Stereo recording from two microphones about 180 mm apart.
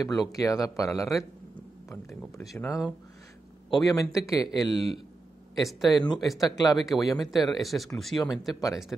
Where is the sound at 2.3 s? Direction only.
20° left (ahead or behind).